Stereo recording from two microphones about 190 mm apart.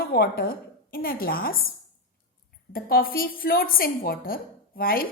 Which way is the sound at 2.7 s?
50° left (ahead or behind).